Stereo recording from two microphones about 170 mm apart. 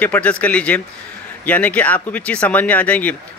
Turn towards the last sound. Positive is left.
turn(degrees=10)  # may be behind; listen again after turning